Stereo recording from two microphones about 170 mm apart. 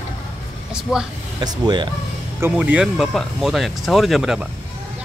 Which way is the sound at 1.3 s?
25° right (ahead or behind).